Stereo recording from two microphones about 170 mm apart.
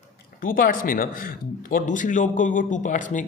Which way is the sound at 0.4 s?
55° left (ahead or behind).